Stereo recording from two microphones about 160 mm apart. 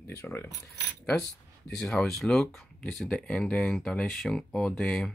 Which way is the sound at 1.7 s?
5° left (ahead or behind).